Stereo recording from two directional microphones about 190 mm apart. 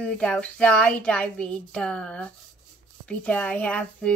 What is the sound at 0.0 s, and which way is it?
A woman's voice, 5° left (ahead or behind).